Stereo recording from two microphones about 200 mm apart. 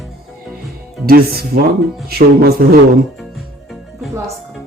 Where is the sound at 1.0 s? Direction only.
50° right (ahead or behind).